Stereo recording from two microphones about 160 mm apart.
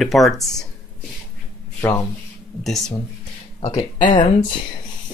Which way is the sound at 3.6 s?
40° left (ahead or behind).